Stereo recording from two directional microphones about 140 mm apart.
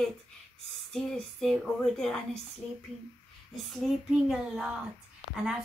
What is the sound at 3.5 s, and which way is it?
Speech, 5° right (ahead or behind).